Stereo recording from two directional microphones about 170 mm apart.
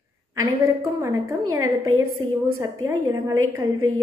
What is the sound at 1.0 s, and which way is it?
A woman's voice, 20° right (ahead or behind).